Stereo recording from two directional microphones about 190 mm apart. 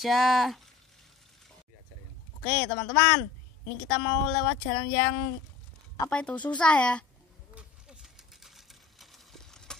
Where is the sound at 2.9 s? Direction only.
10° left (ahead or behind).